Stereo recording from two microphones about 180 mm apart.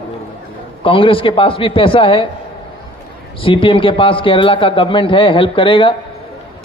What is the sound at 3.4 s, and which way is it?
A man's voice, 30° left (ahead or behind).